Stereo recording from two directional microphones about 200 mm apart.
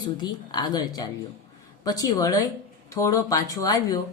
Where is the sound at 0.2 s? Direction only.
20° left (ahead or behind).